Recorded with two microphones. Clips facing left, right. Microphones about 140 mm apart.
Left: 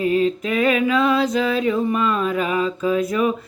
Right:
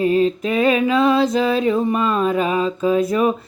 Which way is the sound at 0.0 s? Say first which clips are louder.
Right 2 dB; 30° right (ahead or behind).